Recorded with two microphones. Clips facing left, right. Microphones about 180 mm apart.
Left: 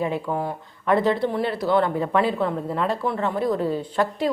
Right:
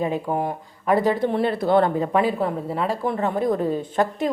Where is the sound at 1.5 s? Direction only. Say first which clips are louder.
Right 3 dB; 50° right (ahead or behind).